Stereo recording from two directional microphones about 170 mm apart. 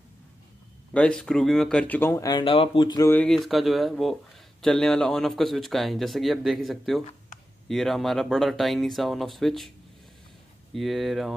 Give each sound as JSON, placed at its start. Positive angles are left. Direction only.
{"t": 0.9, "sound": "speech", "side_deg": 5}
{"t": 2.3, "sound": "speech", "side_deg": 30}
{"t": 3.1, "sound": "speech", "side_deg": 5}
{"t": 10.7, "sound": "speech", "side_deg": 0}